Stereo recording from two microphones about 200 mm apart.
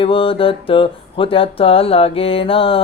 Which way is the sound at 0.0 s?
25° left (ahead or behind).